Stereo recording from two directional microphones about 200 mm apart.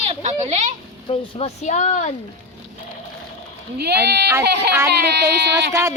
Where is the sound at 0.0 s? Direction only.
35° right (ahead or behind).